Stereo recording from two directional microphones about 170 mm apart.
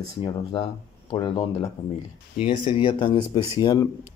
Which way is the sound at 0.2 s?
30° left (ahead or behind).